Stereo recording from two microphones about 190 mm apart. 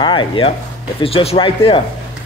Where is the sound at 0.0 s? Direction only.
25° left (ahead or behind).